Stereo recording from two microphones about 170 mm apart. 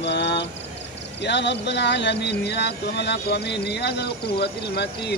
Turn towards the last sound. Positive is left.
turn(degrees=75)  # may be behind; listen again after turning